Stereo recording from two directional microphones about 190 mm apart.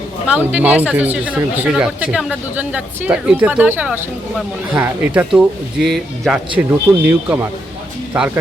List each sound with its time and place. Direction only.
0.3 s speech: 10° right (ahead or behind)